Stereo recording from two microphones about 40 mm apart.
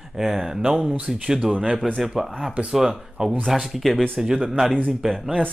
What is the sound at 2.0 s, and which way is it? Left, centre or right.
Speech, centre.